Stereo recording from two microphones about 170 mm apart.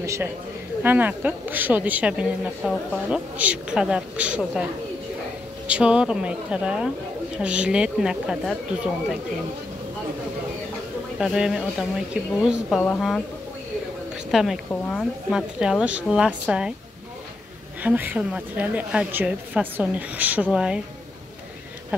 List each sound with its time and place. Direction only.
0.0 s a man's voice: 15° right (ahead or behind)
5.7 s a woman's voice: 5° right (ahead or behind)
11.1 s a woman's voice: 5° right (ahead or behind)
14.1 s a sound: centre (ahead or behind)
14.7 s a woman's voice: 5° left (ahead or behind)
17.8 s a woman's voice: 10° right (ahead or behind)